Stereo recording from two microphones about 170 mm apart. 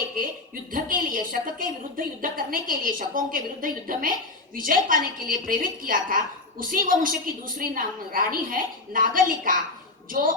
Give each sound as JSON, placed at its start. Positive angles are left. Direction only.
{"t": 0.7, "sound": "a woman's voice", "side_deg": -55}